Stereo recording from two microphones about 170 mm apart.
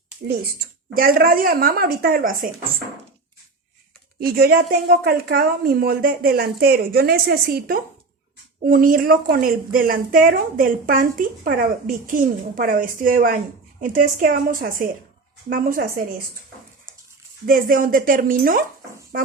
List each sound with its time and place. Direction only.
0.9 s a woman's voice: 60° right (ahead or behind)
4.2 s a woman's voice: 60° right (ahead or behind)
17.4 s a woman's voice: 55° right (ahead or behind)